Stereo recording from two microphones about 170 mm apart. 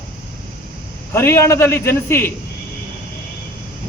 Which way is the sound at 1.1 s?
15° left (ahead or behind).